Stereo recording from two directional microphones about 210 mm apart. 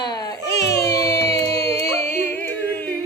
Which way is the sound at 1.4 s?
15° left (ahead or behind).